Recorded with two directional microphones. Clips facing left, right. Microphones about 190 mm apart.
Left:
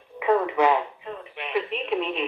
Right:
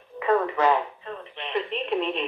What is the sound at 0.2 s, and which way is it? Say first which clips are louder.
Radio: left 1 dB; 10° left (ahead or behind).